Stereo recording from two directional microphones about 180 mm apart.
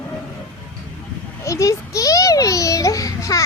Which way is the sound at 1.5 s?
15° left (ahead or behind).